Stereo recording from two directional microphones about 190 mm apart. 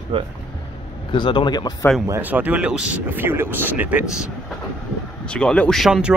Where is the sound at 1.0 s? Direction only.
25° left (ahead or behind).